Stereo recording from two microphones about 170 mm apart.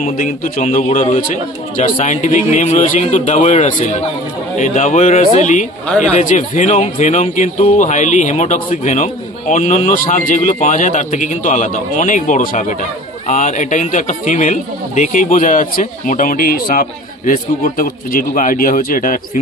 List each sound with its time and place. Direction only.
0.0 s a man's voice: 50° left (ahead or behind)